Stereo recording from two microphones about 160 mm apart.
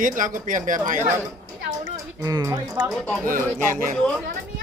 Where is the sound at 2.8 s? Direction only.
Centre (ahead or behind).